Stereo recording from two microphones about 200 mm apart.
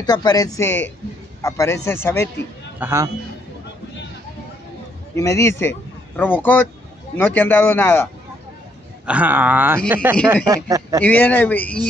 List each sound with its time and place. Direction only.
0.0 s a man's voice: 20° left (ahead or behind)
2.8 s speech: 10° right (ahead or behind)
5.1 s a man's voice: 15° left (ahead or behind)
9.0 s speech: 5° right (ahead or behind)
11.1 s a man's voice: 10° left (ahead or behind)